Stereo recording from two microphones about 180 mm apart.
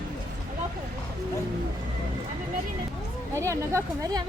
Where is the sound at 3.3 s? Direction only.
15° right (ahead or behind).